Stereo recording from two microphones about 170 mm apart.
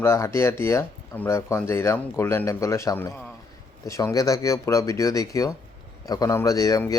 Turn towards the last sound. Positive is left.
turn(degrees=20)  # may be behind; listen again after turning